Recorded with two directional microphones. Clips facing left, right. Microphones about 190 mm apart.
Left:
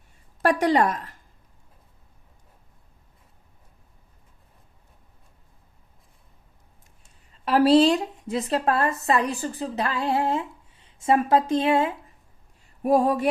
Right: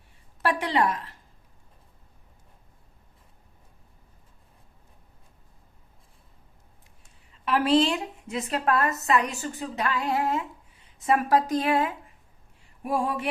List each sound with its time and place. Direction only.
0.4 s a woman's voice: 45° left (ahead or behind)
7.4 s a woman's voice: 35° left (ahead or behind)
12.8 s a woman's voice: 40° left (ahead or behind)